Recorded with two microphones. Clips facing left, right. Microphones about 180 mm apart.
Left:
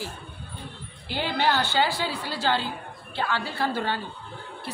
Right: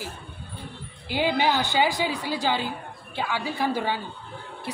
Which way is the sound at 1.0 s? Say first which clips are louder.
Right 2 dB; 15° right (ahead or behind).